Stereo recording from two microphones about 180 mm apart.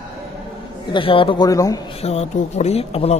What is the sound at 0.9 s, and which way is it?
Speech, 30° left (ahead or behind).